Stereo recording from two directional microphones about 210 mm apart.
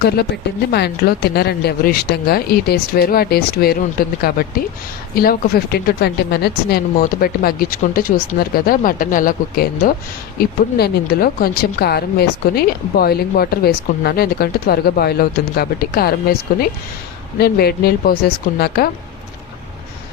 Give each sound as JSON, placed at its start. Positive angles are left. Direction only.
{"t": 0.7, "sound": "speech", "side_deg": 50}